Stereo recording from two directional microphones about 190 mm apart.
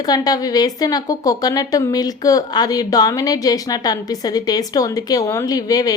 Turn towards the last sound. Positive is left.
turn(degrees=20)  # may be behind; listen again after turning